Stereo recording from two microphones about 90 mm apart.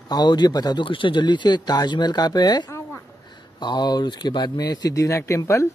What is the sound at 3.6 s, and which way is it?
Speech, 55° left (ahead or behind).